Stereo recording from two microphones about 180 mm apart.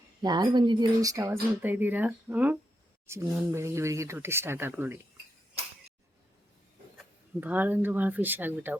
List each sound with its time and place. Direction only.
0.2 s speech: 25° right (ahead or behind)
7.3 s speech: 10° right (ahead or behind)